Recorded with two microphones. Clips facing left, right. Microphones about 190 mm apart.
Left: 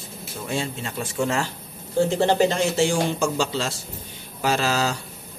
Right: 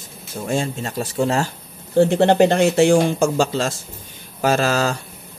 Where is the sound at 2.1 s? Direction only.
65° right (ahead or behind).